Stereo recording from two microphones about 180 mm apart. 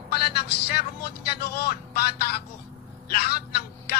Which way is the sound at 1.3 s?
60° left (ahead or behind).